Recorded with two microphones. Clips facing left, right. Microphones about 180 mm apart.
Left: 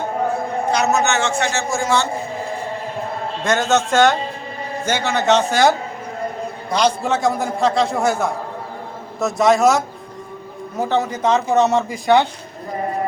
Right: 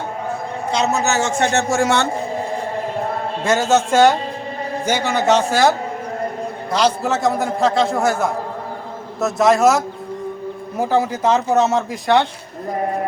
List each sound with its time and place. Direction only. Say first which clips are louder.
0.7 s a man's voice: even; 30° right (ahead or behind)
1.5 s speech: right 3 dB; 65° right (ahead or behind)
3.4 s a man's voice: right 1 dB; 5° right (ahead or behind)